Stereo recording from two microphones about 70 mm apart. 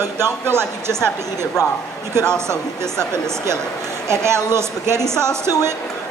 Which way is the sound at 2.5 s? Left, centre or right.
Right.